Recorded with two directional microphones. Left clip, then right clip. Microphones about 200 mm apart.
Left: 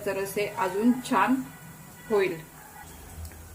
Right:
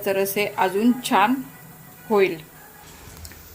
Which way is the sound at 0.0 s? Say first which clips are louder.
Right 7 dB; 50° right (ahead or behind).